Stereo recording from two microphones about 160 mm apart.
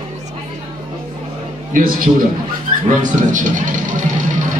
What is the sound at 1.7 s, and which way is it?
A man's voice, 60° right (ahead or behind).